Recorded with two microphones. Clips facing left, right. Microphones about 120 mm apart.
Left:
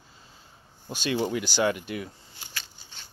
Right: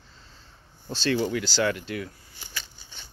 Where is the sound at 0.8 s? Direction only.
15° left (ahead or behind).